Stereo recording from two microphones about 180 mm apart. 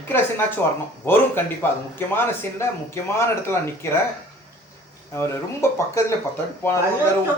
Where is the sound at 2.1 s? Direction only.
15° left (ahead or behind).